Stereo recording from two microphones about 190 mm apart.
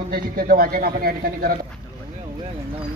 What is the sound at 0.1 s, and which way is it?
A man's voice, 50° right (ahead or behind).